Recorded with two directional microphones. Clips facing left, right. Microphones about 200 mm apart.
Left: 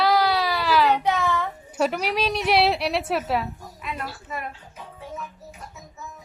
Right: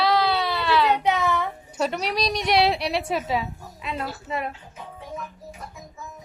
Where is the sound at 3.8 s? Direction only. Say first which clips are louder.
Right 3 dB; 25° right (ahead or behind).